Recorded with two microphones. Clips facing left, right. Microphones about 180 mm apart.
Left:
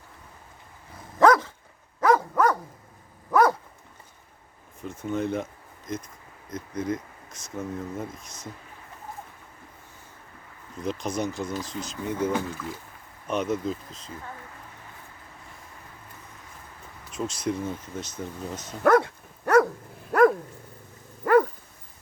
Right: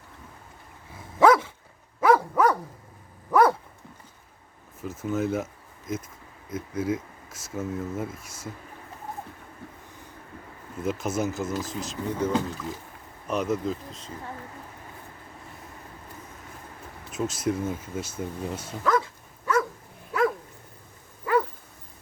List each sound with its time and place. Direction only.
1.2 s dog: 5° right (ahead or behind)
4.8 s speech: 5° right (ahead or behind)
10.8 s speech: 5° right (ahead or behind)
13.2 s speech: centre (ahead or behind)
17.1 s speech: 5° right (ahead or behind)
18.8 s dog: 60° left (ahead or behind)
20.1 s dog: 50° left (ahead or behind)